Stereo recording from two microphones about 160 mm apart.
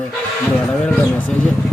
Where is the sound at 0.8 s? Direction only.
10° left (ahead or behind).